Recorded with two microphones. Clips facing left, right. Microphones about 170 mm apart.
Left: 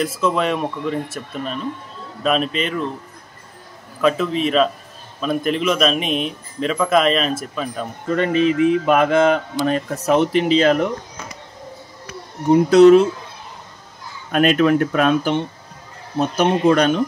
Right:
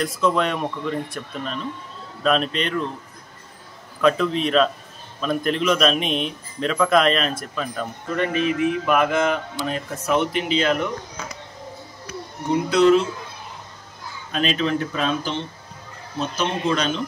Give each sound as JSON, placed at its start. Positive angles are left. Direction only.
{"t": 0.0, "sound": "speech", "side_deg": 5}
{"t": 4.0, "sound": "speech", "side_deg": 5}
{"t": 8.3, "sound": "speech", "side_deg": 30}
{"t": 12.6, "sound": "speech", "side_deg": 45}
{"t": 14.3, "sound": "speech", "side_deg": 55}